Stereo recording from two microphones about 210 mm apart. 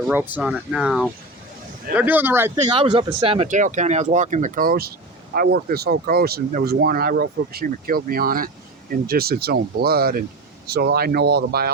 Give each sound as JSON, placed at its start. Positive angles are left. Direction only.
{"t": 0.1, "sound": "speech", "side_deg": -10}
{"t": 2.7, "sound": "speech", "side_deg": -20}